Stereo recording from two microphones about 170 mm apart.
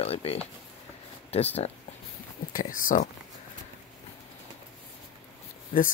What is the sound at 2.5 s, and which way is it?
Speech, 50° left (ahead or behind).